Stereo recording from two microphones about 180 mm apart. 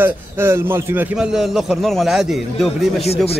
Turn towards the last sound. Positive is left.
turn(degrees=0)  # may be behind; listen again after turning